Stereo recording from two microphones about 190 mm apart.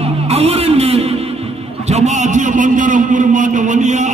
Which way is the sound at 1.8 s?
35° right (ahead or behind).